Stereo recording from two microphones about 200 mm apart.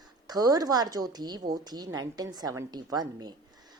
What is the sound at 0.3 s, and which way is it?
A woman's voice, 20° right (ahead or behind).